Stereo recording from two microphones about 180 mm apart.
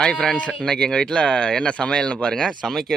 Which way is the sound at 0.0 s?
5° left (ahead or behind).